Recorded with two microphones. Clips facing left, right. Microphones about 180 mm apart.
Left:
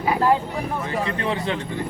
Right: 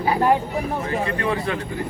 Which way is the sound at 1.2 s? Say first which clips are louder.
Right 1 dB; 25° left (ahead or behind).